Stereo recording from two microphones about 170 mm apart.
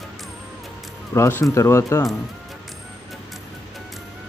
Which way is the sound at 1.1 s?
15° left (ahead or behind).